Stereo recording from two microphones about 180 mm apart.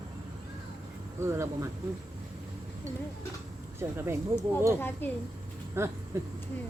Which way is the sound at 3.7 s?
15° right (ahead or behind).